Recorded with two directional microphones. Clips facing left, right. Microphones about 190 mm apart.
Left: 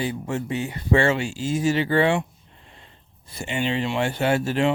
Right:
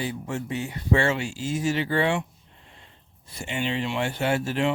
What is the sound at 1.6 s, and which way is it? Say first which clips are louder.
Speech: left 4 dB; 85° left.